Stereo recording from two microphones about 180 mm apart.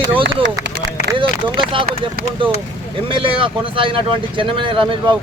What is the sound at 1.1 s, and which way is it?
Speech, 30° right (ahead or behind).